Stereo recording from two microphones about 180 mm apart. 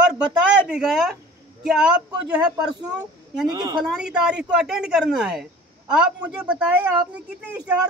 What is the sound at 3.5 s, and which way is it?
Speech, 25° right (ahead or behind).